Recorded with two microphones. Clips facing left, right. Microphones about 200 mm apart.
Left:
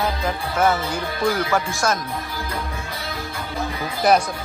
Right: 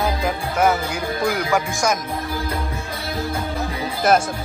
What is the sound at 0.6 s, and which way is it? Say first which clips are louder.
Music: right 1 dB; 10° right (ahead or behind).